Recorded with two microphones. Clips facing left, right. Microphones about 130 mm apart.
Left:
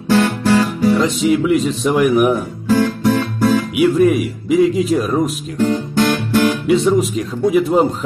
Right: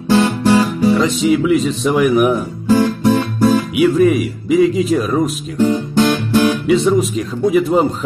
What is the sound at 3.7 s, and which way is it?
Speech, centre (ahead or behind).